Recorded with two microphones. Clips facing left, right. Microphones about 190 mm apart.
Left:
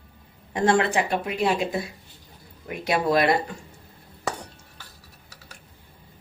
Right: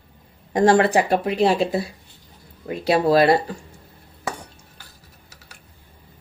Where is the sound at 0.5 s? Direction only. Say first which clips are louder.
Right 5 dB; 35° right (ahead or behind).